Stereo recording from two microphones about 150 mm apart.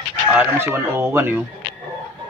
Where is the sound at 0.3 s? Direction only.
10° right (ahead or behind).